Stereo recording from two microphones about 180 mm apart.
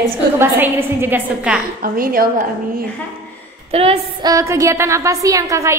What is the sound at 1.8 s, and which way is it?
Speech, 55° right (ahead or behind).